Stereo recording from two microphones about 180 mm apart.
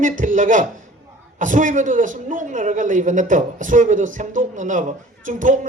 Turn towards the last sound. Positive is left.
turn(degrees=-45)  # may be behind; listen again after turning